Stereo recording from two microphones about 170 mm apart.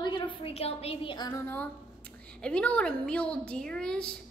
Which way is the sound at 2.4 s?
5° left (ahead or behind).